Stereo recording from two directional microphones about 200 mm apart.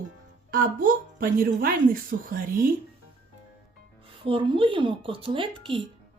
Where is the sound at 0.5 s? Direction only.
45° right (ahead or behind).